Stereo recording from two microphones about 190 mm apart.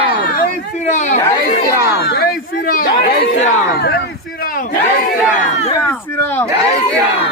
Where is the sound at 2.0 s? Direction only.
55° left (ahead or behind).